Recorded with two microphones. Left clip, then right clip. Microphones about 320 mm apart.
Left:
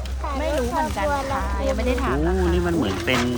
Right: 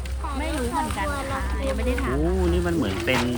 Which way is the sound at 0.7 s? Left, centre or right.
Centre.